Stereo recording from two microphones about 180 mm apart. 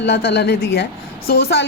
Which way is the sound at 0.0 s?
65° left (ahead or behind).